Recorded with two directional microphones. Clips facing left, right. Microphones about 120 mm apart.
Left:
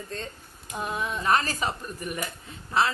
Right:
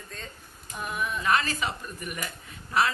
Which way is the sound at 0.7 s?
25° left (ahead or behind).